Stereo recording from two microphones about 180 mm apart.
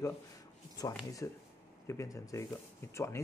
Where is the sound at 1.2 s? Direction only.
15° left (ahead or behind).